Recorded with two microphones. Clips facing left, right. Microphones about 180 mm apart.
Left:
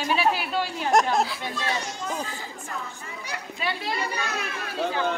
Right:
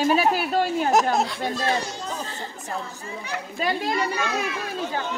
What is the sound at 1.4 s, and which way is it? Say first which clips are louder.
Speech: right 5 dB; 40° right (ahead or behind).